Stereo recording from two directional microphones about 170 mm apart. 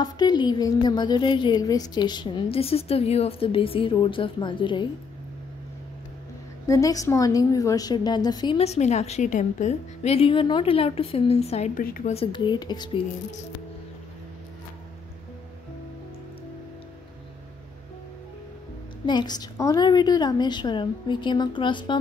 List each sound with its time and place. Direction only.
0.0 s a woman's voice: 25° left (ahead or behind)
6.6 s a woman's voice: 20° left (ahead or behind)
8.5 s a woman's voice: 40° left (ahead or behind)
11.8 s a woman's voice: 60° left (ahead or behind)
12.1 s a woman's voice: 30° left (ahead or behind)
19.0 s a woman's voice: 25° left (ahead or behind)